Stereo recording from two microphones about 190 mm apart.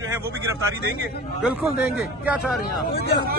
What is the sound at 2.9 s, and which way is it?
Speech, 55° left (ahead or behind).